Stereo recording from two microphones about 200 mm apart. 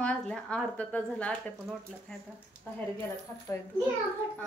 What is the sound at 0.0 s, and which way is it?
A woman's voice, 5° left (ahead or behind).